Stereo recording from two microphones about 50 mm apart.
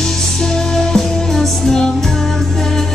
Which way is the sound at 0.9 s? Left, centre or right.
Centre.